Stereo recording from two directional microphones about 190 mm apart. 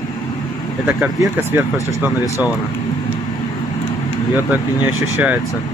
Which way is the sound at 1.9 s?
15° left (ahead or behind).